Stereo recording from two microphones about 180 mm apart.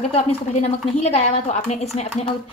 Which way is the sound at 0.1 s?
35° left (ahead or behind).